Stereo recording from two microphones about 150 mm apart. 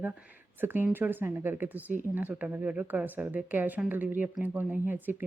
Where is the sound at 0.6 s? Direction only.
15° right (ahead or behind).